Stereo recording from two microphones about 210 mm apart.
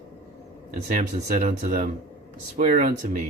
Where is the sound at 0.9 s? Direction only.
40° right (ahead or behind).